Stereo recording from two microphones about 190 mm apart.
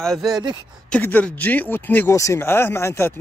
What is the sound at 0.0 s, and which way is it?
Speech, centre (ahead or behind).